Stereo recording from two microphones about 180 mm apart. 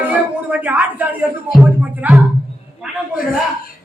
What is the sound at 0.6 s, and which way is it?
A man's voice, 10° right (ahead or behind).